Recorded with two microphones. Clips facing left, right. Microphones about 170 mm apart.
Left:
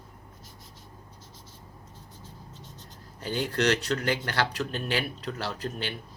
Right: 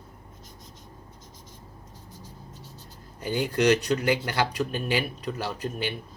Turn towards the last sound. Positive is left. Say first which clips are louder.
# right 3 dB
turn(degrees=-10)  # may be behind; listen again after turning